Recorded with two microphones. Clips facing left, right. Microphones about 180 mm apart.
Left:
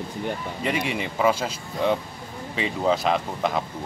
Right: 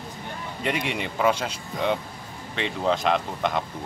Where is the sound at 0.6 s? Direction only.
Centre (ahead or behind).